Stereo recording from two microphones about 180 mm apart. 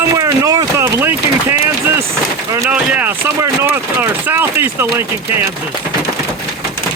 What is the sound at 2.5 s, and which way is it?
Speech, 10° right (ahead or behind).